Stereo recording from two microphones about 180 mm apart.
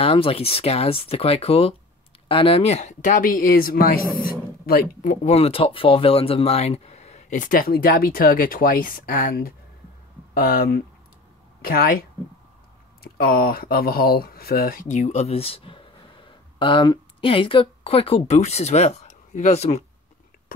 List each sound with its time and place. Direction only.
0.0 s speech: 30° left (ahead or behind)